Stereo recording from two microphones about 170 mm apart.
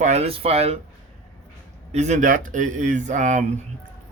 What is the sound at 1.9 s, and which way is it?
Speech, 45° right (ahead or behind).